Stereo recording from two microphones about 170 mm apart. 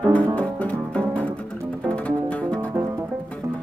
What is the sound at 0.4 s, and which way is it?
Music, 10° left (ahead or behind).